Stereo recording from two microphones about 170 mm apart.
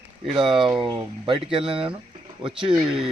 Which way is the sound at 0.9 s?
25° right (ahead or behind).